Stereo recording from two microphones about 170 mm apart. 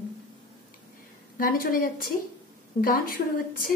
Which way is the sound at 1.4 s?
55° left (ahead or behind).